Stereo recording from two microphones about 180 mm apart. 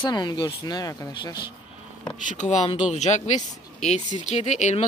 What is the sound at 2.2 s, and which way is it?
Speech, 40° left (ahead or behind).